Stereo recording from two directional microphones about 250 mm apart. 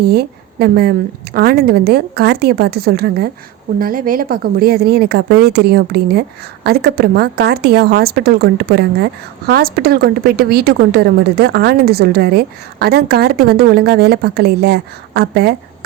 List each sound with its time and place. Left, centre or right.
0.0 s a woman's voice: right